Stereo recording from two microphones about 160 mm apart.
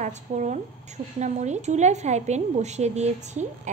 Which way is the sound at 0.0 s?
50° right (ahead or behind).